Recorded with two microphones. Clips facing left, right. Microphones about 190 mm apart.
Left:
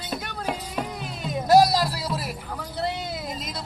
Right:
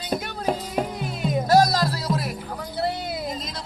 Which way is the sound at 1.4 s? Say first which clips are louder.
Left 2 dB; 10° left (ahead or behind).